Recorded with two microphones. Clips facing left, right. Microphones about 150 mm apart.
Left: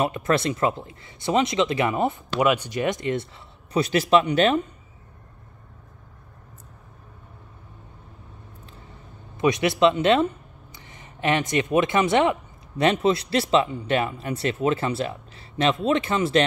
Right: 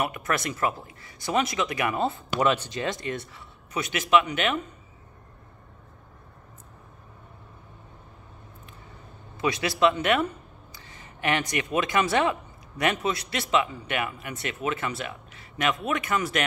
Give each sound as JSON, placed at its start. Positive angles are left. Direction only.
{"t": 0.0, "sound": "speech", "side_deg": 25}
{"t": 9.4, "sound": "speech", "side_deg": 20}